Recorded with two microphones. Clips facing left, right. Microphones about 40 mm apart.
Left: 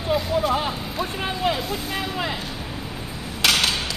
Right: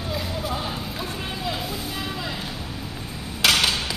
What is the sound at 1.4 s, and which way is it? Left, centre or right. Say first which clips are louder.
Speech: left 7 dB; left.